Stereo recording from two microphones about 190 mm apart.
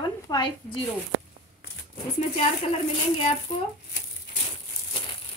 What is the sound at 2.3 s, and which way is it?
Speech, 30° left (ahead or behind).